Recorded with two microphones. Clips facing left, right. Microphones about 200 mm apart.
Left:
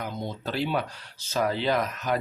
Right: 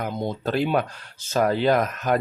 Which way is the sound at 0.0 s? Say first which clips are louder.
Right 6 dB; 50° right (ahead or behind).